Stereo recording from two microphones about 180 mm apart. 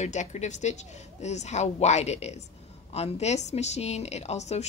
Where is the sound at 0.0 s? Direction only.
40° left (ahead or behind).